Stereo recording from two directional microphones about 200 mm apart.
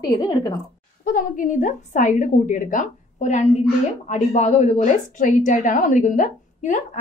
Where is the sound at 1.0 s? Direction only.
45° left (ahead or behind).